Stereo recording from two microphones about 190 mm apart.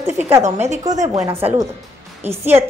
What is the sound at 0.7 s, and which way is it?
Speech, 40° right (ahead or behind).